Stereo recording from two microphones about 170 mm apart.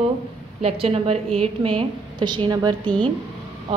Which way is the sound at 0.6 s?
35° right (ahead or behind).